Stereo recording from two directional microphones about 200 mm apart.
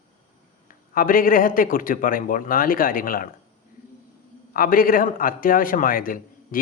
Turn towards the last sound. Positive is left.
turn(degrees=45)  # may be behind; listen again after turning